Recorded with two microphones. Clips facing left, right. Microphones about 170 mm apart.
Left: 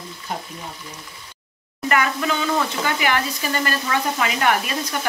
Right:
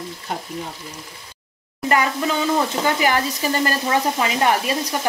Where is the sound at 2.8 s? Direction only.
35° right (ahead or behind).